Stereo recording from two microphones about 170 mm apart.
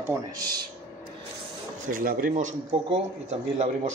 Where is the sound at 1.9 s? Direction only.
55° right (ahead or behind).